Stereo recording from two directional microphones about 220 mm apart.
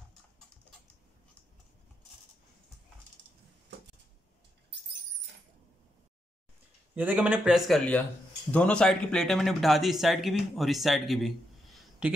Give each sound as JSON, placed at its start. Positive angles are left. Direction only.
{"t": 7.0, "sound": "speech", "side_deg": -5}